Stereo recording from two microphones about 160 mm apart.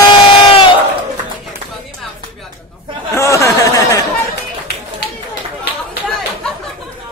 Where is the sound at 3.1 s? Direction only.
20° left (ahead or behind).